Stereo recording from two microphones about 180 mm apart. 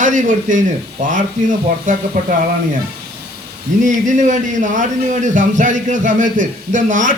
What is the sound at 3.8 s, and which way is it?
A man's voice, 45° right (ahead or behind).